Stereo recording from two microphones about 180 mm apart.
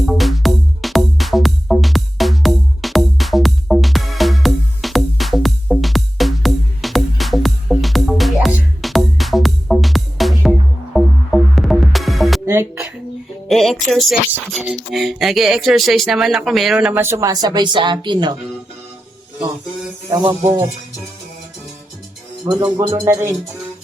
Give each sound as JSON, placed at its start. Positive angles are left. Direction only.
{"t": 0.0, "sound": "music", "side_deg": 0}
{"t": 12.5, "sound": "music", "side_deg": -15}
{"t": 13.5, "sound": "music", "side_deg": 0}
{"t": 14.4, "sound": "speech", "side_deg": -5}
{"t": 20.1, "sound": "speech", "side_deg": -20}
{"t": 22.4, "sound": "speech", "side_deg": -20}